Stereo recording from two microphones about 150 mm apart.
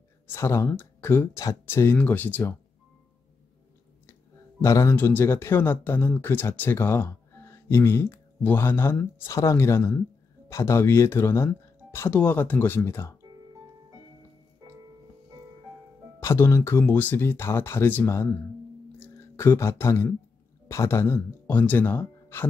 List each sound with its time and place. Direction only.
0.3 s speech: 15° left (ahead or behind)
4.6 s speech: 20° left (ahead or behind)
16.2 s speech: 15° left (ahead or behind)
18.9 s a sound: 15° left (ahead or behind)
20.6 s speech: 20° left (ahead or behind)